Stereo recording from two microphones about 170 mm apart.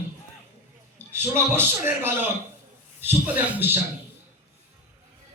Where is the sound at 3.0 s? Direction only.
10° right (ahead or behind).